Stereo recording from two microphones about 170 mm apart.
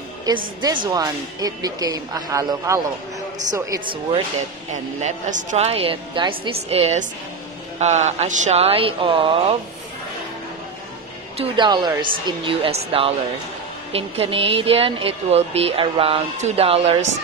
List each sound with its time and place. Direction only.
0.3 s speech: 25° right (ahead or behind)
3.8 s speech: 30° right (ahead or behind)
5.0 s a woman's voice: 45° right (ahead or behind)
11.3 s a woman's voice: 25° right (ahead or behind)